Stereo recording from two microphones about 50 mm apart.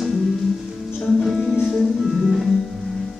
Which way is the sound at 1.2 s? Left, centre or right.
Centre.